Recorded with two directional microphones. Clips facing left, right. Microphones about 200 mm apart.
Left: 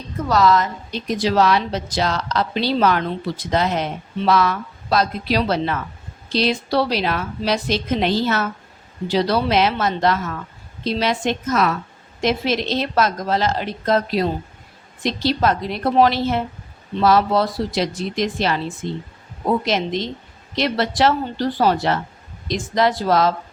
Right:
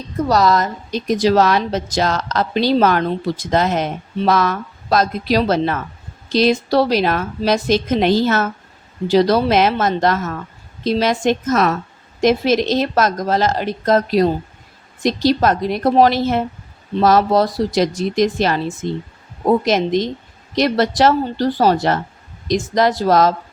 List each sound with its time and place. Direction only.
0.3 s a woman's voice: 40° right (ahead or behind)